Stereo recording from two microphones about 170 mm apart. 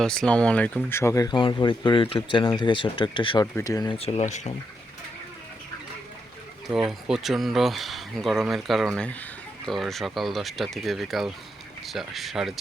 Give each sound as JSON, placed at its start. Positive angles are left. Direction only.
{"t": 0.0, "sound": "speech", "side_deg": 5}
{"t": 3.4, "sound": "speech", "side_deg": 15}
{"t": 3.9, "sound": "speech", "side_deg": 35}
{"t": 6.7, "sound": "speech", "side_deg": -5}